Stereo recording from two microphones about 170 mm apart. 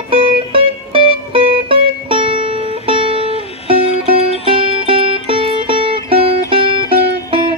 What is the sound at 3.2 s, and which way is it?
Music, 35° left (ahead or behind).